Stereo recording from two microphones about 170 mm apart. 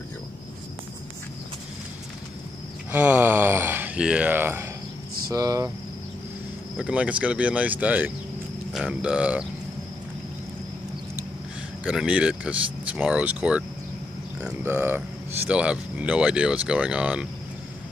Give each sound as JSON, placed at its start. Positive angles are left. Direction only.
{"t": 2.9, "sound": "speech", "side_deg": -10}
{"t": 6.8, "sound": "speech", "side_deg": -5}
{"t": 11.8, "sound": "speech", "side_deg": -5}